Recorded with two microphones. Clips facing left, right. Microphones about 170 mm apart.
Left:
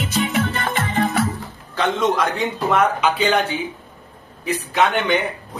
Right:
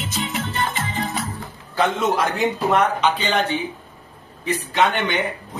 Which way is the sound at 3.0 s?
10° left (ahead or behind).